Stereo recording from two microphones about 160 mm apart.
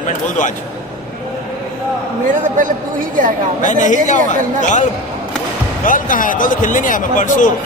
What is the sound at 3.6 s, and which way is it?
Speech, 50° left (ahead or behind).